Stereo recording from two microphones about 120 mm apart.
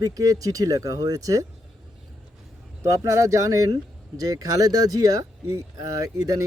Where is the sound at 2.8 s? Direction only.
25° right (ahead or behind).